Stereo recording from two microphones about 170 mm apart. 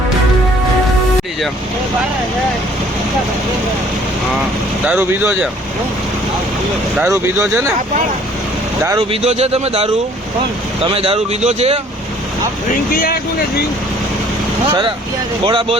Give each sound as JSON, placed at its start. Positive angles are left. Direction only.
{"t": 4.9, "sound": "speech", "side_deg": -10}
{"t": 7.0, "sound": "speech", "side_deg": -15}
{"t": 9.0, "sound": "speech", "side_deg": -40}
{"t": 15.4, "sound": "speech", "side_deg": -30}